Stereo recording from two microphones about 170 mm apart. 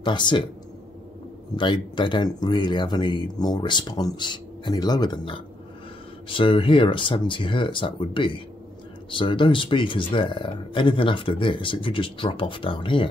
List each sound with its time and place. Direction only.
0.0 s speech: 25° left (ahead or behind)
1.6 s speech: 25° left (ahead or behind)